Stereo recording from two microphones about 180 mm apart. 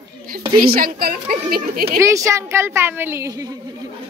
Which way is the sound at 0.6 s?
55° right (ahead or behind).